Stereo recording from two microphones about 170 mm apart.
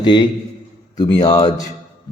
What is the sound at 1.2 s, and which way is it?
Speech, 25° left (ahead or behind).